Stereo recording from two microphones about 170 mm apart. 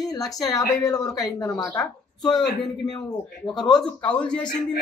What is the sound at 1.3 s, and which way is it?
Speech, 20° left (ahead or behind).